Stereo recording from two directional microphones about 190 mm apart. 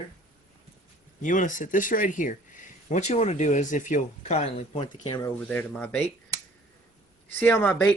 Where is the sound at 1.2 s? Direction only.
40° left (ahead or behind).